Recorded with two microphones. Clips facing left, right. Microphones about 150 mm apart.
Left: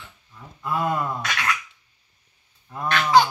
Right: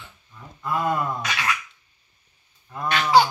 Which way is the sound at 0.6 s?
5° left (ahead or behind).